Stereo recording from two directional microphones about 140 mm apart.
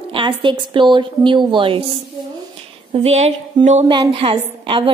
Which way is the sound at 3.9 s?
40° right (ahead or behind).